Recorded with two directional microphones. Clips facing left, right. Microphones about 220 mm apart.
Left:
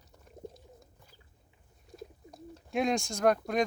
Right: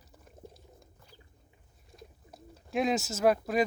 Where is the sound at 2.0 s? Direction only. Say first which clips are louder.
Left 5 dB; centre (ahead or behind).